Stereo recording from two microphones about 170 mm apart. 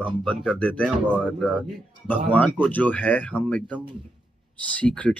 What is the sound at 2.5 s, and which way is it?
Speech, 10° left (ahead or behind).